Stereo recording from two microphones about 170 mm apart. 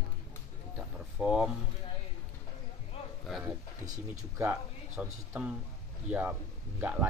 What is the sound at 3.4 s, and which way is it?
A man's voice, 20° right (ahead or behind).